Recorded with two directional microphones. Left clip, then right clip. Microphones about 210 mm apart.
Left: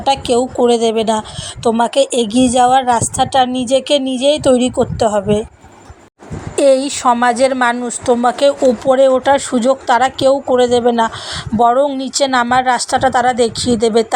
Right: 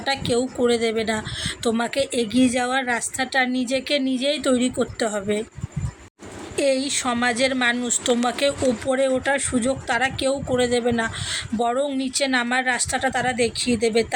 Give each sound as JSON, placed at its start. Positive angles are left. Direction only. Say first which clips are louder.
{"t": 0.0, "sound": "a woman's voice", "louder": "left 9 dB", "side_deg": 25}
{"t": 6.6, "sound": "speech", "louder": "left 10 dB", "side_deg": 15}